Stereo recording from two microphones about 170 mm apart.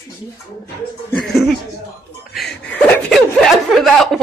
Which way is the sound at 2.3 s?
Centre (ahead or behind).